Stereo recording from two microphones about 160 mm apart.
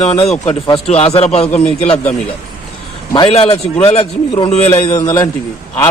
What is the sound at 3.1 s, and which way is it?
Speech, 35° left (ahead or behind).